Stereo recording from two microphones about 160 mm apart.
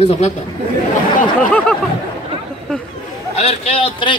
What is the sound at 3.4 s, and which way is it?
Speech, 40° left (ahead or behind).